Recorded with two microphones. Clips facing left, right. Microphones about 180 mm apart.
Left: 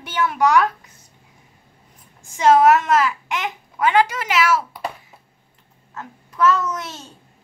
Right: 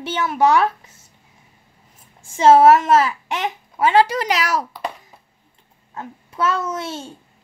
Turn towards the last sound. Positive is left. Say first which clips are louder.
# right 1 dB
turn(degrees=-30)  # may be behind; listen again after turning